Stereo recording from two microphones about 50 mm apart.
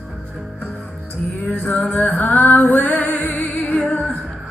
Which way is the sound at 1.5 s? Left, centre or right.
Left.